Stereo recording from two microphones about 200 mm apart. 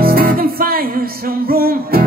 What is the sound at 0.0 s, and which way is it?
Music, 45° right (ahead or behind).